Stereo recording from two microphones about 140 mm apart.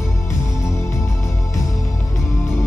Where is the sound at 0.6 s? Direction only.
20° left (ahead or behind).